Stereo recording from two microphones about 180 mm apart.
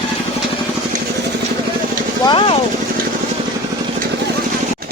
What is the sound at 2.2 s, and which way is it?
Vehicle, 30° left (ahead or behind).